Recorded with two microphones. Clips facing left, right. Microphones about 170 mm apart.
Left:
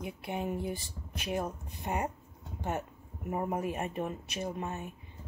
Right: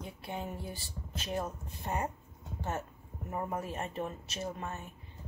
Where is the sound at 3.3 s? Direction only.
15° left (ahead or behind).